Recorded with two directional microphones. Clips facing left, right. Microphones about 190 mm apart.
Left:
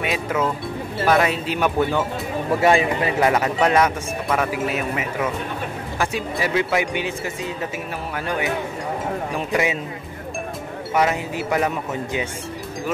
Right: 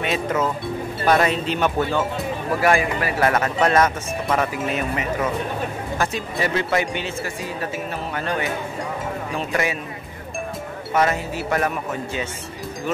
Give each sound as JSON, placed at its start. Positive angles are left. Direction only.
{"t": 0.0, "sound": "music", "side_deg": 5}
{"t": 1.0, "sound": "speech", "side_deg": 5}
{"t": 2.6, "sound": "speech", "side_deg": 25}
{"t": 6.3, "sound": "speech", "side_deg": 10}
{"t": 8.2, "sound": "speech", "side_deg": 15}
{"t": 11.0, "sound": "speech", "side_deg": 15}